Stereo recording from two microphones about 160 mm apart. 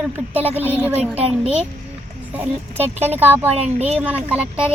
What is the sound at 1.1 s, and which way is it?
Speech, 40° right (ahead or behind).